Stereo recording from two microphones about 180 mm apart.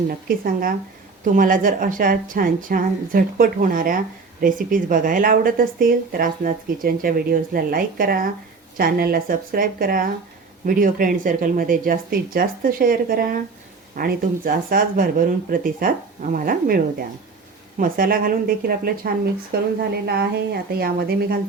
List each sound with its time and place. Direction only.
0.1 s a woman's voice: 55° right (ahead or behind)